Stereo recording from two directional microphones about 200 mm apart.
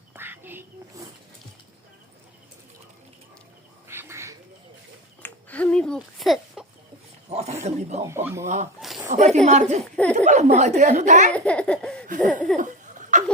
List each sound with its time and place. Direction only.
0.1 s duck: 10° right (ahead or behind)
3.8 s bird: 15° right (ahead or behind)
5.2 s a sound: 5° left (ahead or behind)
7.3 s roaring cats: 30° right (ahead or behind)
7.6 s a sound: 35° right (ahead or behind)
8.0 s speech: 15° right (ahead or behind)
9.0 s speech: 35° right (ahead or behind)
9.8 s speech: 5° left (ahead or behind)
10.2 s speech: 35° right (ahead or behind)
11.3 s baby laughter: 5° left (ahead or behind)
12.2 s speech: 5° left (ahead or behind)
12.5 s a sound: 40° right (ahead or behind)